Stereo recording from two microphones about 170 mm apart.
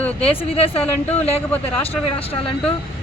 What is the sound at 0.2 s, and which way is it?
Speech, 35° left (ahead or behind).